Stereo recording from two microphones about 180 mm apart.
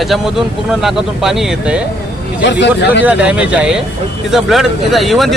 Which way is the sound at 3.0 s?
5° right (ahead or behind).